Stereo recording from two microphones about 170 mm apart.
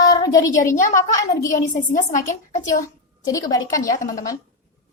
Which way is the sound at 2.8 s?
20° left (ahead or behind).